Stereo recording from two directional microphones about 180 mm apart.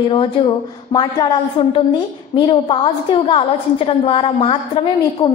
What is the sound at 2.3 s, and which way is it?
A woman's voice, 25° left (ahead or behind).